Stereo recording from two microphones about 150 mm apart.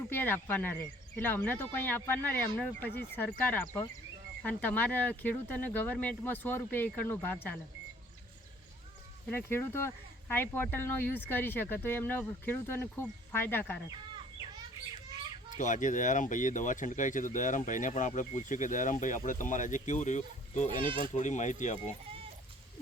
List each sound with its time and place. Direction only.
0.1 s speech: 15° left (ahead or behind)
9.3 s speech: 15° left (ahead or behind)
15.4 s speech: 60° left (ahead or behind)